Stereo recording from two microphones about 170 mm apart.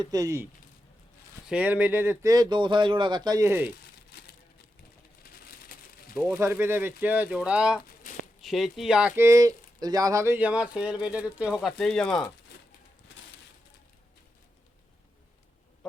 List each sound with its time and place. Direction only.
0.0 s speech: 20° right (ahead or behind)
1.5 s speech: 10° right (ahead or behind)
5.5 s a sound: 65° left (ahead or behind)
6.3 s speech: 15° right (ahead or behind); by 12.3 s 5° left (ahead or behind)